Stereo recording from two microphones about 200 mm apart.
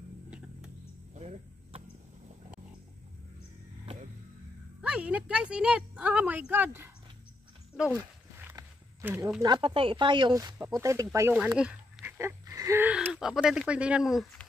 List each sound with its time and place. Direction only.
1.1 s cricket: 35° right (ahead or behind)
4.8 s a sound: 5° right (ahead or behind)
7.7 s speech: 5° right (ahead or behind)